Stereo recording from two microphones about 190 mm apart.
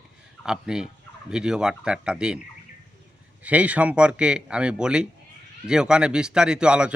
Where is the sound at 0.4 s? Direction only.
5° right (ahead or behind).